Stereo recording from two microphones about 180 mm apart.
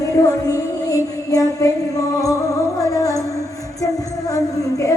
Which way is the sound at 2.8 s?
20° left (ahead or behind).